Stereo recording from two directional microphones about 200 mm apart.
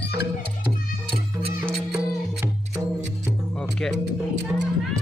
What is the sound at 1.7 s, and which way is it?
Music, centre (ahead or behind).